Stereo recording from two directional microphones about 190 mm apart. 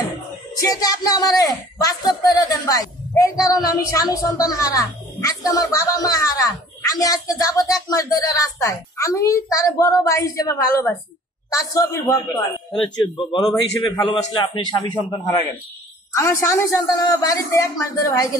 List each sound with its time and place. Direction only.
0.6 s speech: 20° left (ahead or behind)